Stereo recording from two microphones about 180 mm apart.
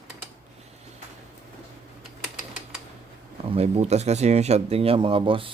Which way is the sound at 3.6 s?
35° right (ahead or behind).